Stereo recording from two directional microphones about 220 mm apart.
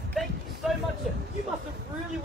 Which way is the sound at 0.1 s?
Centre (ahead or behind).